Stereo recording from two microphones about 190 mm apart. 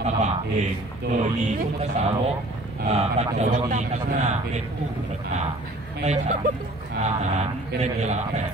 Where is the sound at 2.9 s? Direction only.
35° right (ahead or behind).